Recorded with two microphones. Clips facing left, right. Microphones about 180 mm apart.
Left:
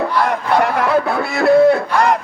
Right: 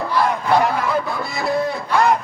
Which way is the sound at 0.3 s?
65° left (ahead or behind).